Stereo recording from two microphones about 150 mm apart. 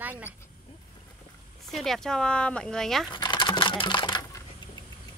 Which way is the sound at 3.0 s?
30° left (ahead or behind).